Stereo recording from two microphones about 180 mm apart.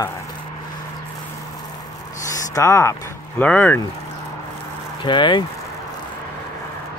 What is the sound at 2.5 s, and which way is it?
Speech, 15° left (ahead or behind).